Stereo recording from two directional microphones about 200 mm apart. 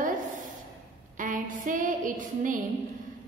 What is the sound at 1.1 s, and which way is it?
A woman's voice, 40° right (ahead or behind).